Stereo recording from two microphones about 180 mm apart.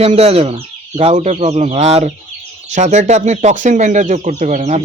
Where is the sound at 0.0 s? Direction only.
35° right (ahead or behind).